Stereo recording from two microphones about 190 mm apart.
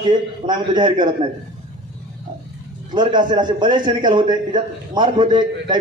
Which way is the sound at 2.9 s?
25° right (ahead or behind).